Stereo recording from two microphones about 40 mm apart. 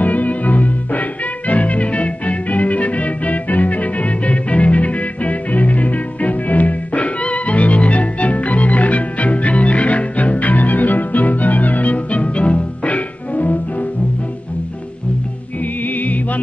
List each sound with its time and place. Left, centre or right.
0.0 s music: left